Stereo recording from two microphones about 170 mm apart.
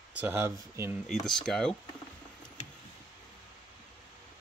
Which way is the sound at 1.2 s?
5° left (ahead or behind).